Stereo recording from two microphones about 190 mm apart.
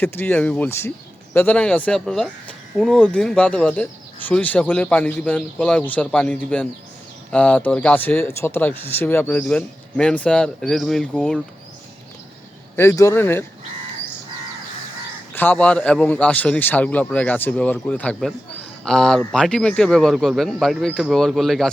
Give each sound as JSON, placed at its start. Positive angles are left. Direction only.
{"t": 0.0, "sound": "a man's voice", "side_deg": 10}
{"t": 12.7, "sound": "speech", "side_deg": 15}
{"t": 15.4, "sound": "a man's voice", "side_deg": 10}